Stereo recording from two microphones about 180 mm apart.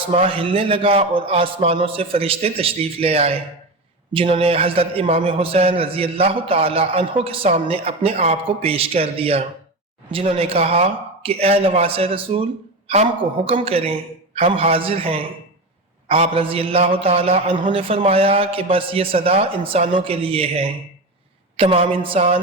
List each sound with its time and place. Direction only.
0.1 s a man's voice: 30° right (ahead or behind)